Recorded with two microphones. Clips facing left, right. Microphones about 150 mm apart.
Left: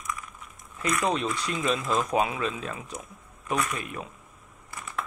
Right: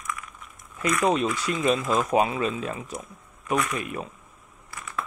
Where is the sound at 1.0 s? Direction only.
40° right (ahead or behind).